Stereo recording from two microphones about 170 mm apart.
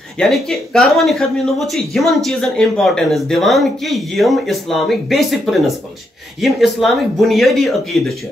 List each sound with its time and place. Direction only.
0.2 s speech: centre (ahead or behind)